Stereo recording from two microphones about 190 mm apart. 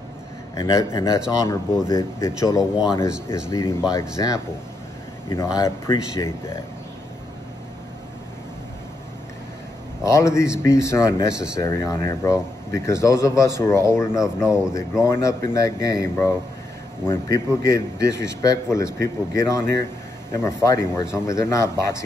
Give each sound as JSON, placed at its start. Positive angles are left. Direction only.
{"t": 0.6, "sound": "speech", "side_deg": 20}
{"t": 10.0, "sound": "speech", "side_deg": 15}